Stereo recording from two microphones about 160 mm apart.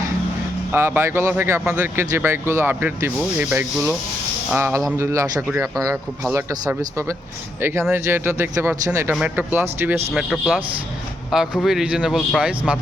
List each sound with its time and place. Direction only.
0.7 s speech: 15° right (ahead or behind)
9.1 s speech: 10° right (ahead or behind)
10.2 s speech: centre (ahead or behind)